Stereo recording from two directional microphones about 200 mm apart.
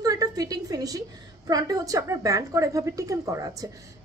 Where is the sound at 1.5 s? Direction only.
20° right (ahead or behind).